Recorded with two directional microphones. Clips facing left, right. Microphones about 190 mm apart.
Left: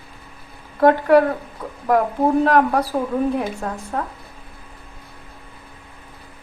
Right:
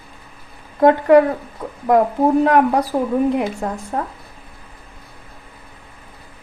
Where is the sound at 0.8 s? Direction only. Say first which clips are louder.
Right 2 dB; 15° right (ahead or behind).